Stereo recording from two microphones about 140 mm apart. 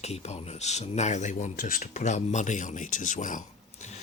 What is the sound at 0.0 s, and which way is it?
Speech, 50° left (ahead or behind).